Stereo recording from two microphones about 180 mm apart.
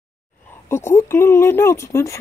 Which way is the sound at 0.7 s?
15° left (ahead or behind).